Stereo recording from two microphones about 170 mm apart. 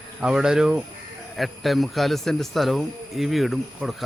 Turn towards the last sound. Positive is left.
turn(degrees=0)  # may be behind; listen again after turning